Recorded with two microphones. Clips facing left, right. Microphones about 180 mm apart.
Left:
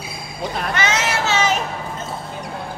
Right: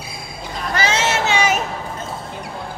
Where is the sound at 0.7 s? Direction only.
30° right (ahead or behind).